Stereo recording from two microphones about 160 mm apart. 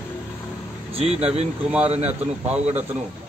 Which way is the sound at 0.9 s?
40° right (ahead or behind).